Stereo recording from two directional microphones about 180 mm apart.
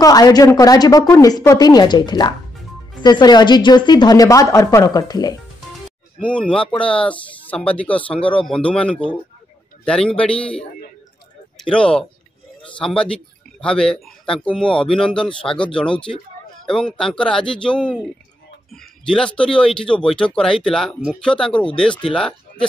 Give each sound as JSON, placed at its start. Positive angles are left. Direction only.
{"t": 0.0, "sound": "a woman's voice", "side_deg": 20}
{"t": 6.1, "sound": "speech", "side_deg": 5}
{"t": 11.7, "sound": "speech", "side_deg": 5}